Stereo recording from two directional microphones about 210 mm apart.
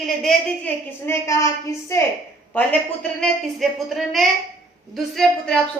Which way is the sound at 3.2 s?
Centre (ahead or behind).